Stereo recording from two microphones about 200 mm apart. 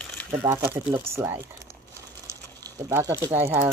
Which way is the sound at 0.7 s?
25° right (ahead or behind).